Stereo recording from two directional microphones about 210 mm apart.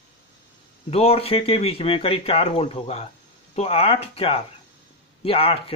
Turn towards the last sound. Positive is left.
turn(degrees=25)  # may be behind; listen again after turning